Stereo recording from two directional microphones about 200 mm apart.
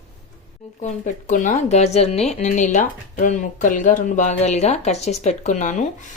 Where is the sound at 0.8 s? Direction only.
35° left (ahead or behind).